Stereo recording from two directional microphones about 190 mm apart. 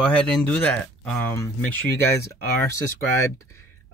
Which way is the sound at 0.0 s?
5° left (ahead or behind).